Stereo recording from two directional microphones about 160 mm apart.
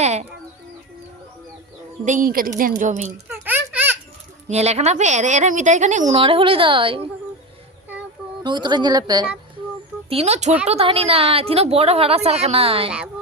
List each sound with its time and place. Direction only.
0.0 s speech: 45° right (ahead or behind)
2.0 s a woman's voice: 60° right (ahead or behind)
3.2 s a sound: 10° right (ahead or behind)
4.4 s a woman's voice: 40° right (ahead or behind)
6.2 s a woman's voice: 35° right (ahead or behind)
8.4 s a woman's voice: 30° right (ahead or behind)
10.1 s a woman's voice: 40° right (ahead or behind)